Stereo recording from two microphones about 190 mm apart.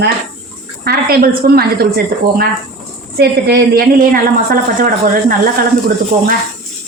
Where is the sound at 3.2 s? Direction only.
60° right (ahead or behind).